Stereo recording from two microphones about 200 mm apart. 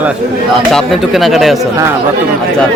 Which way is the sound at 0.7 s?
Centre (ahead or behind).